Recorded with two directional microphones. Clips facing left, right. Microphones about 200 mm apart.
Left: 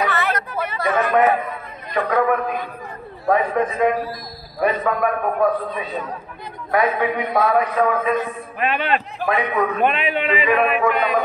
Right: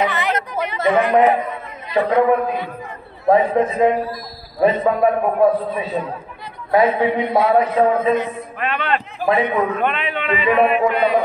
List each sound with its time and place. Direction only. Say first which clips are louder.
0.0 s a man's voice: right 2 dB; 20° right (ahead or behind)
8.5 s speech: left 1 dB; 15° left (ahead or behind)
9.3 s a man's voice: right 3 dB; 25° right (ahead or behind)
9.8 s speech: left 2 dB; 15° left (ahead or behind)
10.5 s a man's voice: right 4 dB; 25° right (ahead or behind)